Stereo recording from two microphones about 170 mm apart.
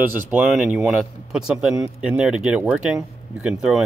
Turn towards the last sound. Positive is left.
turn(degrees=-5)  # may be behind; listen again after turning